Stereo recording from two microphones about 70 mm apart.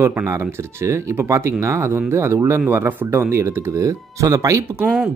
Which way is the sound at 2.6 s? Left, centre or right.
Right.